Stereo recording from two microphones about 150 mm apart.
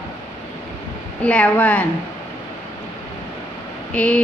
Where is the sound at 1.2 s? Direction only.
10° left (ahead or behind).